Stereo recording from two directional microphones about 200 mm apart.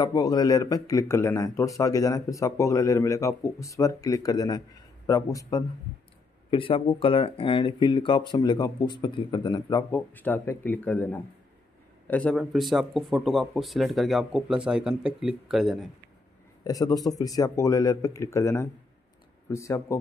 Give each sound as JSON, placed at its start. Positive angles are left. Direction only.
{"t": 0.0, "sound": "speech", "side_deg": 20}
{"t": 16.6, "sound": "speech", "side_deg": 20}